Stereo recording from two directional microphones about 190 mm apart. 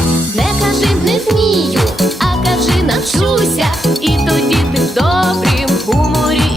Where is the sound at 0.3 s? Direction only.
Centre (ahead or behind).